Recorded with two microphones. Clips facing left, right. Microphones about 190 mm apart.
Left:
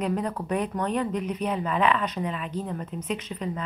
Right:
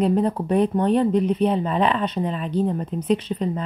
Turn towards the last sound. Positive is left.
turn(degrees=-30)  # may be behind; listen again after turning